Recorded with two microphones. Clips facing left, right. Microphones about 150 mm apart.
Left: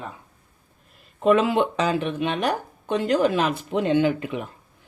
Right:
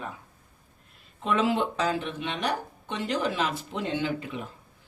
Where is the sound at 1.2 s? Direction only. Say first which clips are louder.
Left 7 dB; 60° left (ahead or behind).